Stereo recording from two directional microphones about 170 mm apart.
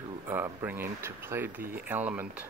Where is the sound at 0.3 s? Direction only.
10° right (ahead or behind).